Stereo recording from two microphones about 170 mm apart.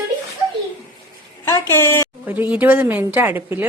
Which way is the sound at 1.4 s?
15° left (ahead or behind).